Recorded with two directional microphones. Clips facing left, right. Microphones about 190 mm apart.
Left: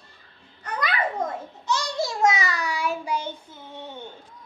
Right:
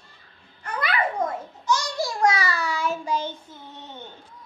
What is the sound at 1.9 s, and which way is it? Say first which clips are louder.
Child singing: left 2 dB; 20° left (ahead or behind).